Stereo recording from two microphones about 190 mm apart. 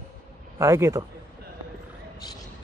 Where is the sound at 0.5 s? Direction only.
15° right (ahead or behind).